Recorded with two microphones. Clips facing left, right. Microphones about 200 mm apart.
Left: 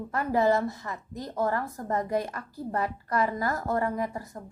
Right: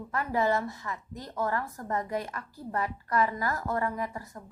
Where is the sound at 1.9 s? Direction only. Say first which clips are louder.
Left 4 dB; 40° left (ahead or behind).